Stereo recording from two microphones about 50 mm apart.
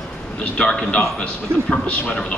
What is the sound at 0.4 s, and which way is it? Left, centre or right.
Speech, left.